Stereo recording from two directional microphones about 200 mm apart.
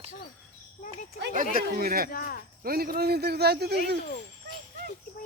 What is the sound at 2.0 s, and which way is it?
Speech, 45° left (ahead or behind).